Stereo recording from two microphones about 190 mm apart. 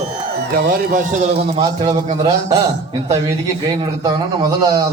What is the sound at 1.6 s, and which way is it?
A man's voice, 20° right (ahead or behind).